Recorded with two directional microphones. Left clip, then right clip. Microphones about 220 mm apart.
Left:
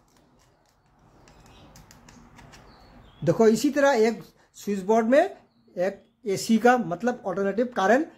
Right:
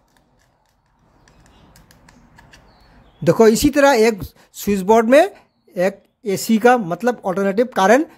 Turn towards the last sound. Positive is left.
turn(degrees=-40)  # may be behind; listen again after turning